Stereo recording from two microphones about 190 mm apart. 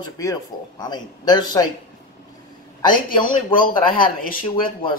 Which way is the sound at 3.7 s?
45° left (ahead or behind).